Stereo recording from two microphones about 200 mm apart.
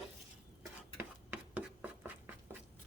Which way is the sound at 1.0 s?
10° right (ahead or behind).